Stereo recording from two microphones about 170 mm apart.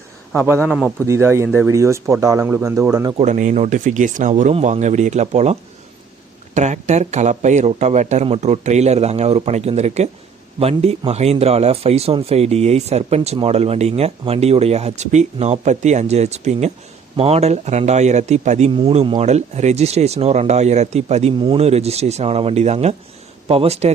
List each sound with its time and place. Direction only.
0.3 s speech: 15° right (ahead or behind)
3.2 s speech: 45° right (ahead or behind)